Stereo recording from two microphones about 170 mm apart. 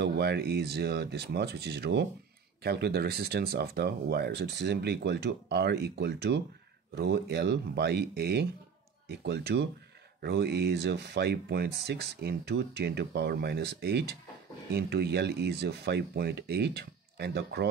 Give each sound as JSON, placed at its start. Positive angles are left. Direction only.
{"t": 0.0, "sound": "speech", "side_deg": -70}